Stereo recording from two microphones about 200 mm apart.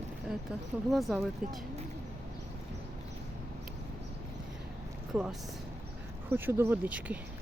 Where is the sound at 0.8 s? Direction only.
Centre (ahead or behind).